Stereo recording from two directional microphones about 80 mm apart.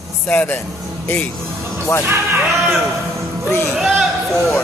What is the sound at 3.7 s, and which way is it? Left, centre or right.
Speech, centre.